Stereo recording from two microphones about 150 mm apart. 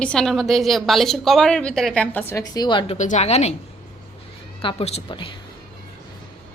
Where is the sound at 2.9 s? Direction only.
50° left (ahead or behind).